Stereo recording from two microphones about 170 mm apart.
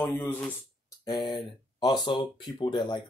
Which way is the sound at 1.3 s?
25° left (ahead or behind).